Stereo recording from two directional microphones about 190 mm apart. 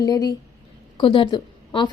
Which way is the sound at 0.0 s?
20° left (ahead or behind).